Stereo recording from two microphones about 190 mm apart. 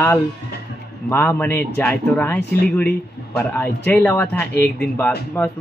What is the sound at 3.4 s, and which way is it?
Speech, 10° left (ahead or behind).